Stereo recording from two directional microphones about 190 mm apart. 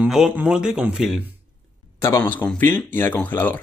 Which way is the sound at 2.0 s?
10° left (ahead or behind).